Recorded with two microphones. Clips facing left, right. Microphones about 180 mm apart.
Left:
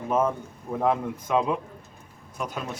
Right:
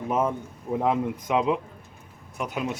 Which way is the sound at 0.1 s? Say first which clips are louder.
Left 1 dB; 15° right (ahead or behind).